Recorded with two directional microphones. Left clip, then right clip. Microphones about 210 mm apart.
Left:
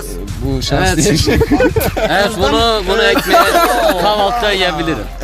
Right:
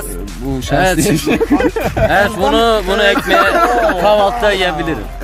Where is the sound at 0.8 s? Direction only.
35° right (ahead or behind).